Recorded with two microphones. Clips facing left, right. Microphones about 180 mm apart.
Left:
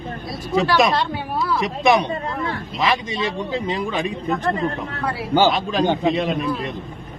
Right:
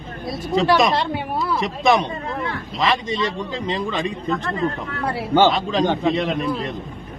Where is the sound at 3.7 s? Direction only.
10° left (ahead or behind).